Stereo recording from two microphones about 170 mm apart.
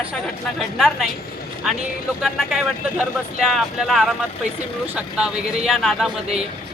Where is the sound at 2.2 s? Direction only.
Centre (ahead or behind).